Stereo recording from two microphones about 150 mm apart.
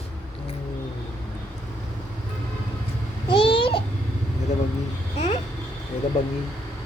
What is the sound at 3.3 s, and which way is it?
Babbling, 35° left (ahead or behind).